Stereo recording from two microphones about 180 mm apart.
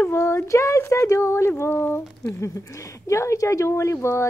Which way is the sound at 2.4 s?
15° left (ahead or behind).